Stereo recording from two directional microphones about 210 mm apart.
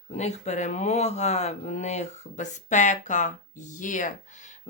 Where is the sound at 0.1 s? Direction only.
35° left (ahead or behind).